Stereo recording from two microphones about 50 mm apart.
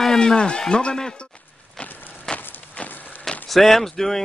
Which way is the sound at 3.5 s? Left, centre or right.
Centre.